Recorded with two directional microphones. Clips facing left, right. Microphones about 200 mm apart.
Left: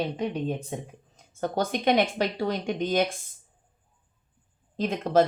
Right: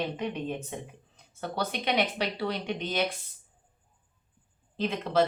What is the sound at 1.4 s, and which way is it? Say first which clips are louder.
Speech: left 6 dB; 45° left (ahead or behind).